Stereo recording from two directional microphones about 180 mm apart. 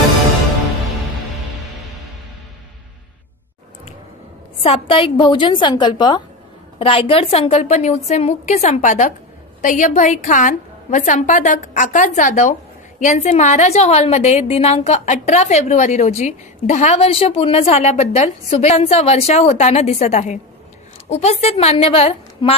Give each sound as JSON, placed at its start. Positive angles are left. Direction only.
{"t": 4.6, "sound": "a woman's voice", "side_deg": 30}